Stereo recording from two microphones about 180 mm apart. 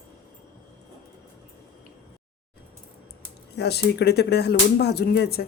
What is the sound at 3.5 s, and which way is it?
Speech, 65° left (ahead or behind).